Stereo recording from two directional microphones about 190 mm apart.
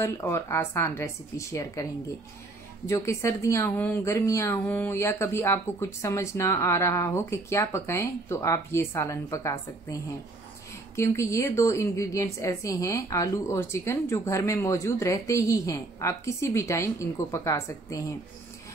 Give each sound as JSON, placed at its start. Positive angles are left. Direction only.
{"t": 0.0, "sound": "speech", "side_deg": 15}
{"t": 2.9, "sound": "speech", "side_deg": 15}
{"t": 11.0, "sound": "speech", "side_deg": 15}